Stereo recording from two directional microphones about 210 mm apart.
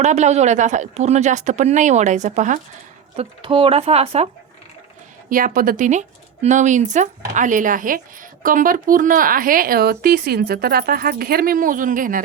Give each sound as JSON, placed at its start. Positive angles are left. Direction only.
{"t": 0.0, "sound": "speech", "side_deg": -30}
{"t": 5.3, "sound": "speech", "side_deg": -40}